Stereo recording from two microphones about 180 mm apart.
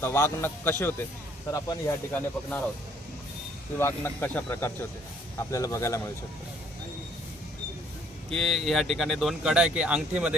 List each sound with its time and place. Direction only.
0.0 s speech: 15° left (ahead or behind)
3.8 s speech: 15° left (ahead or behind)
8.3 s speech: centre (ahead or behind)